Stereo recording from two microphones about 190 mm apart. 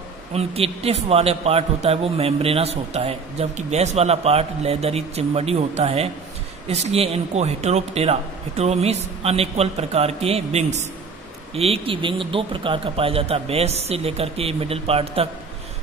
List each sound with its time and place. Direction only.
0.3 s a man's voice: 30° right (ahead or behind)